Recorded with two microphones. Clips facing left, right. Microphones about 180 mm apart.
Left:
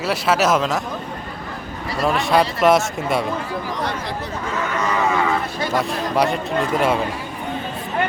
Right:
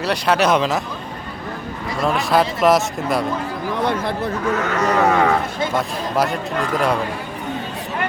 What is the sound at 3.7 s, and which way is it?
Speech, 55° right (ahead or behind).